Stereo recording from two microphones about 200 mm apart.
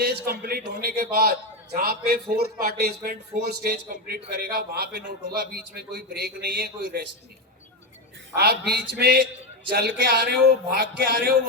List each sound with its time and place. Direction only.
0.0 s a man's voice: 50° right (ahead or behind)
8.4 s a man's voice: 55° right (ahead or behind)